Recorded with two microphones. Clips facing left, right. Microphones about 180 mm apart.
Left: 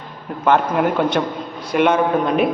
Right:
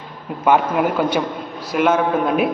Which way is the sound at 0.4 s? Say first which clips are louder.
Even; 5° right (ahead or behind).